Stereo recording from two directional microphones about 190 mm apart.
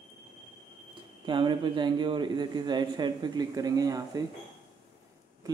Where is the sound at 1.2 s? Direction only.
25° right (ahead or behind).